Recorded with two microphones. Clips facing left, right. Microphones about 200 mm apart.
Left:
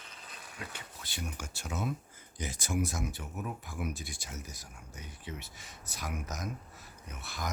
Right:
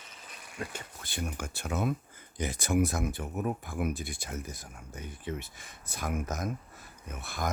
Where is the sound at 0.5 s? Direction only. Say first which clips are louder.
Right 7 dB; 50° right (ahead or behind).